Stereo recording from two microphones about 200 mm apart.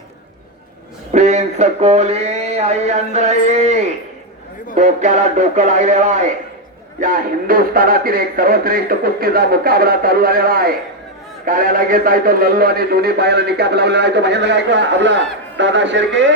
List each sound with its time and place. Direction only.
1.1 s a man's voice: 35° right (ahead or behind); by 16.3 s 65° right (ahead or behind)